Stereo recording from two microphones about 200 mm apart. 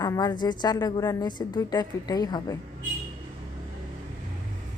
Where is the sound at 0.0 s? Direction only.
20° left (ahead or behind).